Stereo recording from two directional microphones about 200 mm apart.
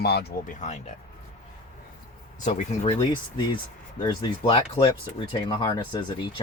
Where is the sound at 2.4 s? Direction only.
35° left (ahead or behind).